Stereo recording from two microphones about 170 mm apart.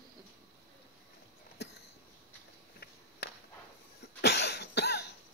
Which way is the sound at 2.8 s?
75° left (ahead or behind).